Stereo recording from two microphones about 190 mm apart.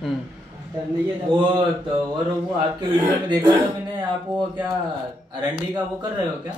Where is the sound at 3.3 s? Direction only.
20° right (ahead or behind).